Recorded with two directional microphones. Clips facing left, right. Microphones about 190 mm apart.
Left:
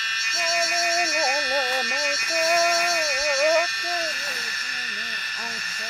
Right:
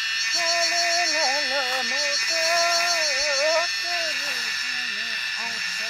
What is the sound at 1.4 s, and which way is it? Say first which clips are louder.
Music: left 3 dB; 55° left (ahead or behind).